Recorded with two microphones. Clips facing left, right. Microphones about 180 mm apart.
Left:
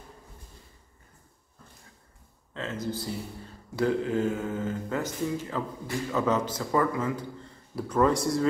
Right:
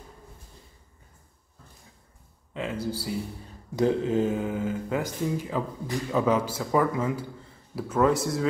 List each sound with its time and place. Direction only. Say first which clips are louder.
2.5 s speech: right 2 dB; 10° right (ahead or behind)
3.7 s speech: right 3 dB; 20° right (ahead or behind)
6.9 s speech: right 2 dB; 20° right (ahead or behind)
7.7 s a man's voice: right 1 dB; 5° right (ahead or behind)